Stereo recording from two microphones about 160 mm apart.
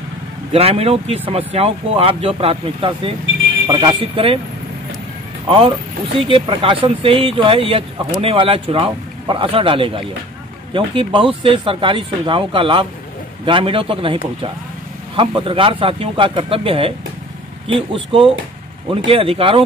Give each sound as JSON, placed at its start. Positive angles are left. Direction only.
{"t": 0.5, "sound": "speech", "side_deg": -40}
{"t": 6.1, "sound": "speech", "side_deg": -35}